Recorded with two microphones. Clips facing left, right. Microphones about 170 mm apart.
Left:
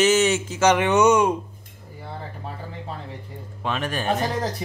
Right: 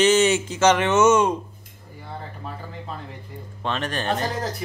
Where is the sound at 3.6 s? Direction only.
5° left (ahead or behind).